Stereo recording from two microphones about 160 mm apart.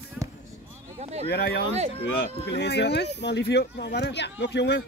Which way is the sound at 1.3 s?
90° left.